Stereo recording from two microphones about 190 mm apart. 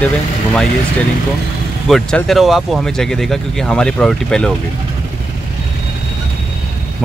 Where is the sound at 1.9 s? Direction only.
5° left (ahead or behind).